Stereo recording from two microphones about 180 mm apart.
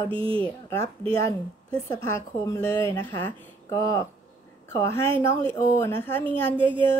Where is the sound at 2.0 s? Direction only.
15° left (ahead or behind).